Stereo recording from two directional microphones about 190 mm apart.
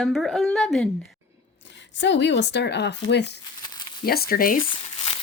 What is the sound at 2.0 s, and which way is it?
A woman's voice, 70° left (ahead or behind).